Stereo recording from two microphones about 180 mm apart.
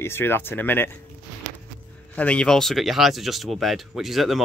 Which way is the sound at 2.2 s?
5° left (ahead or behind).